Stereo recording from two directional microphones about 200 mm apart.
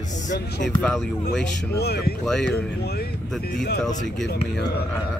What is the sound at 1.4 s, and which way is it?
Speech, 55° left (ahead or behind).